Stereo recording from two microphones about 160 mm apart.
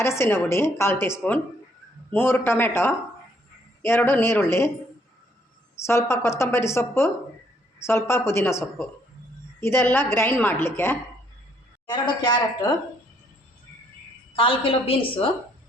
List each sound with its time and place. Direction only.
0.0 s a woman's voice: 15° left (ahead or behind)
5.7 s a woman's voice: 15° left (ahead or behind)
11.9 s speech: 30° left (ahead or behind)
14.3 s a woman's voice: 35° left (ahead or behind)